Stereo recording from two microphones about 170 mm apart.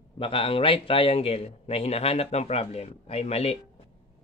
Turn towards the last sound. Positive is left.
turn(degrees=40)  # may be behind; listen again after turning